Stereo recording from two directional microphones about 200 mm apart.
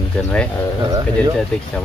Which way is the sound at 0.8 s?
20° right (ahead or behind).